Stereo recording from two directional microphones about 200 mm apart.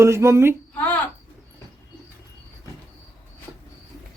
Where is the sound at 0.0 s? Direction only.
15° right (ahead or behind).